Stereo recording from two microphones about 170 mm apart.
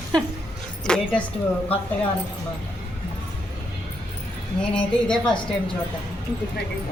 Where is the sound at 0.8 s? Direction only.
5° left (ahead or behind).